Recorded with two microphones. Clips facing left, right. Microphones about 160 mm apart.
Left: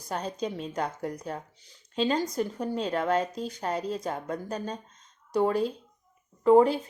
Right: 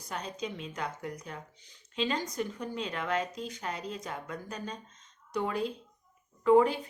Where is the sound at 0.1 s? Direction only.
35° left (ahead or behind).